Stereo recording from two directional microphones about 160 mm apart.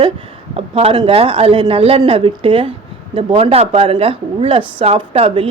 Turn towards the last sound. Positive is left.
turn(degrees=-35)  # may be behind; listen again after turning